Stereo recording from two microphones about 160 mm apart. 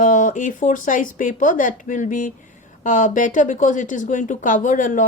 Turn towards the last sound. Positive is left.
turn(degrees=55)  # may be behind; listen again after turning